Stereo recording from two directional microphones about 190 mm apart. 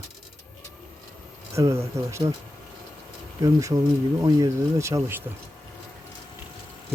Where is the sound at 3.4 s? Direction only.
20° right (ahead or behind).